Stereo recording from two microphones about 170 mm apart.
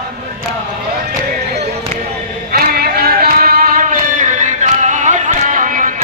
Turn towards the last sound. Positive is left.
turn(degrees=-50)  # may be behind; listen again after turning